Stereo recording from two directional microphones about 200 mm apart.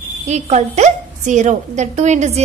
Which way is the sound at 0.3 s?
35° right (ahead or behind).